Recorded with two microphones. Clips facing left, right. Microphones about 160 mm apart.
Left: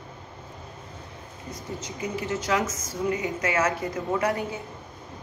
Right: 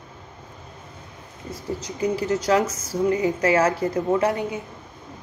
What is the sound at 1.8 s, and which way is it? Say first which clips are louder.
A woman's voice: right 8 dB; 35° right (ahead or behind).